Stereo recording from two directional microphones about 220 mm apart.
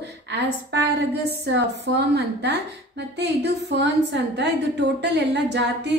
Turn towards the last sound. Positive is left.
turn(degrees=-50)  # may be behind; listen again after turning